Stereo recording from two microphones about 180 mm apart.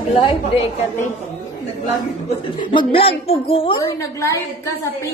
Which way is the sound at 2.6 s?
25° left (ahead or behind).